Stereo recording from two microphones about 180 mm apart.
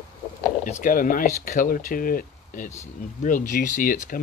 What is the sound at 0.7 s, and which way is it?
Speech, 45° left (ahead or behind).